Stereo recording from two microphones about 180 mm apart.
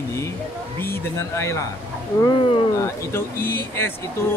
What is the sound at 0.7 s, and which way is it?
Speech, 10° left (ahead or behind).